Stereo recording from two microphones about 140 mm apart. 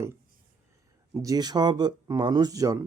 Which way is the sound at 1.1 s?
25° right (ahead or behind).